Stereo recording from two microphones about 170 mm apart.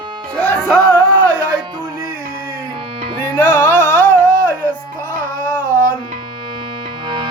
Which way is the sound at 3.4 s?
10° left (ahead or behind).